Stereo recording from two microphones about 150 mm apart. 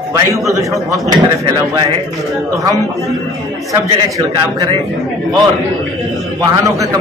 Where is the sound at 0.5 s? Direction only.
20° right (ahead or behind).